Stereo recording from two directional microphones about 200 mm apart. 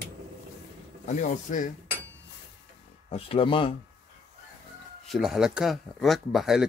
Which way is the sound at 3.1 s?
30° left (ahead or behind).